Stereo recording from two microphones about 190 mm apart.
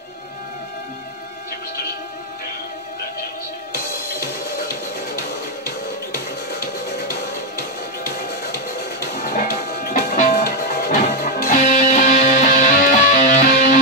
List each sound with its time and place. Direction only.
3.7 s music: 50° left (ahead or behind)
6.1 s music: 50° left (ahead or behind)